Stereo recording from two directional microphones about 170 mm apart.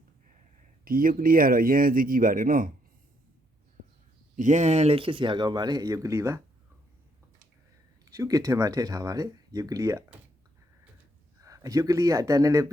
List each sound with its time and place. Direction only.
0.9 s speech: 55° right (ahead or behind)
4.4 s speech: 45° right (ahead or behind); by 6.4 s 15° right (ahead or behind)
8.1 s speech: 20° right (ahead or behind)
11.4 s speech: 20° right (ahead or behind)